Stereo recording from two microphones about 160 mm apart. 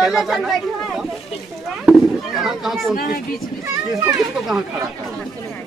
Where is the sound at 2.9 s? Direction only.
65° left (ahead or behind).